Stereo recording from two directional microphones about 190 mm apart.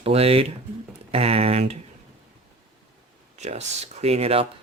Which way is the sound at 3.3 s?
35° right (ahead or behind).